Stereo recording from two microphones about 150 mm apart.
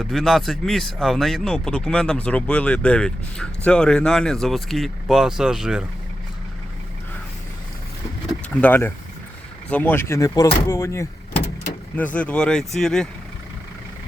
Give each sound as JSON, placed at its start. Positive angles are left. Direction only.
{"t": 0.0, "sound": "speech", "side_deg": 0}
{"t": 8.6, "sound": "speech", "side_deg": 15}